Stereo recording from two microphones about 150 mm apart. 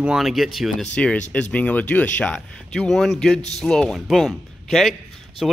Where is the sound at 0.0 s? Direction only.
5° right (ahead or behind).